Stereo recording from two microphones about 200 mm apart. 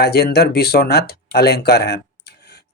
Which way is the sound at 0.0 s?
55° left (ahead or behind).